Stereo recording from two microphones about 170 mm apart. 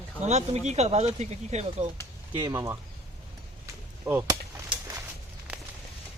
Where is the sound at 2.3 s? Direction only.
15° right (ahead or behind).